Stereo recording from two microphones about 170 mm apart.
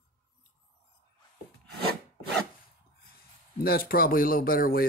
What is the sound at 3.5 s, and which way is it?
Speech, 60° left (ahead or behind).